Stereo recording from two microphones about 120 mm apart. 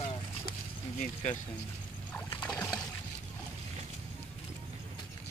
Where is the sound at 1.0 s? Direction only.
85° left.